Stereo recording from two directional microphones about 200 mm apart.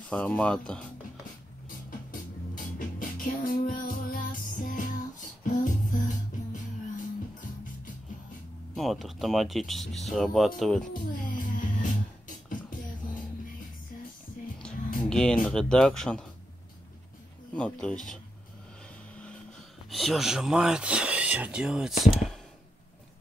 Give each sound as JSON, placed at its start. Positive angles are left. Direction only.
{"t": 0.1, "sound": "speech", "side_deg": 5}
{"t": 1.9, "sound": "music", "side_deg": 45}
{"t": 8.7, "sound": "speech", "side_deg": 0}
{"t": 10.9, "sound": "music", "side_deg": 40}
{"t": 15.0, "sound": "speech", "side_deg": 5}
{"t": 17.6, "sound": "speech", "side_deg": 5}
{"t": 19.9, "sound": "speech", "side_deg": 0}